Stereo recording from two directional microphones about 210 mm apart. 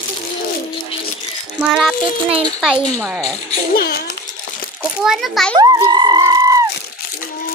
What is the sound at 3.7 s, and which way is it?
Speech, 45° left (ahead or behind).